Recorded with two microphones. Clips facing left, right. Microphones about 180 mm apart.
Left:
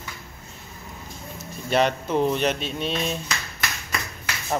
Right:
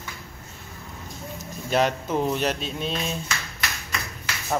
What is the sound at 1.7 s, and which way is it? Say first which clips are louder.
Speech: left 1 dB; 5° right (ahead or behind).